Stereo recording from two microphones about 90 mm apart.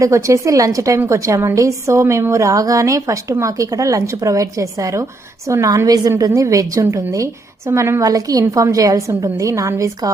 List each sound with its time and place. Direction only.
0.0 s a woman's voice: 35° right (ahead or behind)